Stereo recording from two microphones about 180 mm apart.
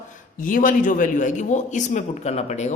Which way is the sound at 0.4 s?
50° left (ahead or behind).